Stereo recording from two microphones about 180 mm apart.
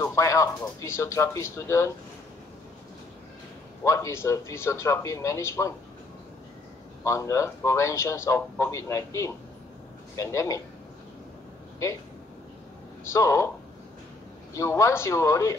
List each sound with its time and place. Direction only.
0.0 s speech: 15° left (ahead or behind)
3.8 s speech: 15° left (ahead or behind)
7.1 s speech: 15° left (ahead or behind)
13.1 s speech: 15° left (ahead or behind)
14.5 s speech: 15° left (ahead or behind)